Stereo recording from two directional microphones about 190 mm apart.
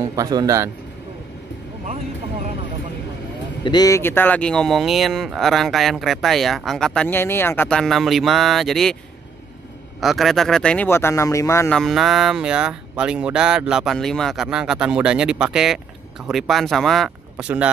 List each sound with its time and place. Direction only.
0.1 s a man's voice: 20° right (ahead or behind)
3.6 s speech: 20° left (ahead or behind); by 8.9 s centre (ahead or behind)
9.9 s speech: centre (ahead or behind); by 11.7 s 15° left (ahead or behind)
11.7 s speech: centre (ahead or behind)